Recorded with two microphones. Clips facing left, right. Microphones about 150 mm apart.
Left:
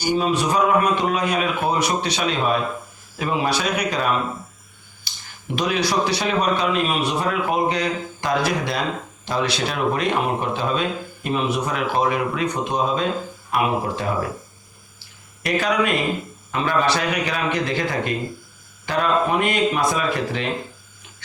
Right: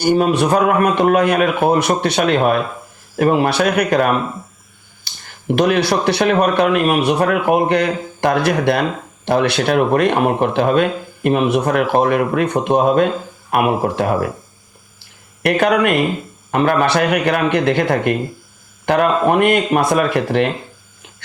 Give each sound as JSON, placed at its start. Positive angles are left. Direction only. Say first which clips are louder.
{"t": 0.0, "sound": "speech", "louder": "right 6 dB", "side_deg": -55}
{"t": 5.5, "sound": "speech", "louder": "right 8 dB", "side_deg": -60}
{"t": 15.4, "sound": "speech", "louder": "right 6 dB", "side_deg": -60}